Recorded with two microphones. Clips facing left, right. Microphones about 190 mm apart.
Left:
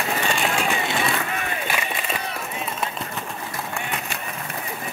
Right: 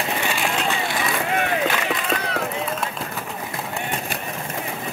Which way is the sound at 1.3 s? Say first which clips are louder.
Right 6 dB; 90° right.